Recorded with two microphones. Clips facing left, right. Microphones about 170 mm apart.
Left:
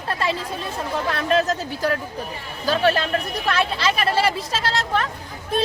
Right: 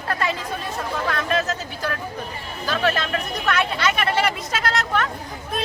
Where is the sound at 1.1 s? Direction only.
35° left (ahead or behind).